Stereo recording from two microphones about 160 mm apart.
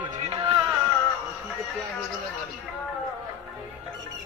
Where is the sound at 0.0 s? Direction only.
30° right (ahead or behind).